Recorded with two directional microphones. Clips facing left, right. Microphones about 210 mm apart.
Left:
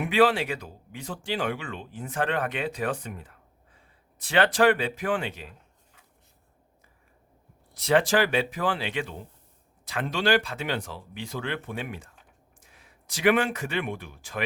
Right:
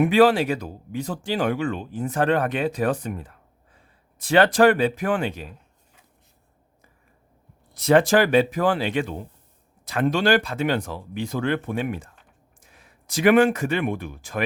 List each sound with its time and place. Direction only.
0.0 s speech: 45° right (ahead or behind)
7.7 s speech: 45° right (ahead or behind)
13.1 s speech: 45° right (ahead or behind)